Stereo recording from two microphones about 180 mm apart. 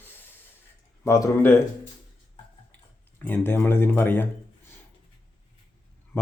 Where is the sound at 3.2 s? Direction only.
10° left (ahead or behind).